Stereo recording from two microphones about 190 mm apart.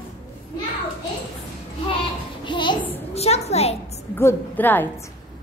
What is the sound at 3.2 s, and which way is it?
Speech, 35° left (ahead or behind).